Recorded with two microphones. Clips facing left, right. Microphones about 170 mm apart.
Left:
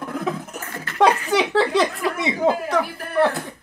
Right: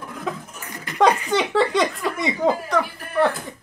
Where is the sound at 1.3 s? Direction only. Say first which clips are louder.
Left 1 dB; centre (ahead or behind).